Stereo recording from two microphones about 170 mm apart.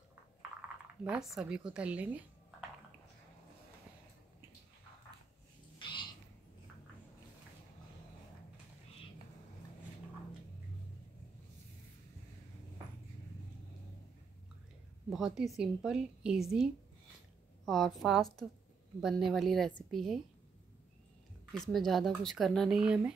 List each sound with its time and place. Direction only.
1.0 s speech: 5° right (ahead or behind)
5.8 s cat: 30° left (ahead or behind)
15.0 s speech: 5° right (ahead or behind)
17.6 s speech: centre (ahead or behind)
21.5 s speech: centre (ahead or behind)